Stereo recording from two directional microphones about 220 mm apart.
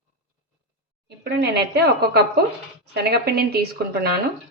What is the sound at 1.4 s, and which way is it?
Speech, 50° right (ahead or behind).